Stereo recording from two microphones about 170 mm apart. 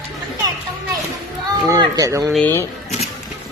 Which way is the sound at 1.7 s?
20° right (ahead or behind).